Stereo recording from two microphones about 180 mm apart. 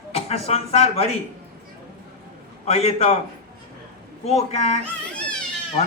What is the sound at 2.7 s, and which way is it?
Speech, 35° left (ahead or behind).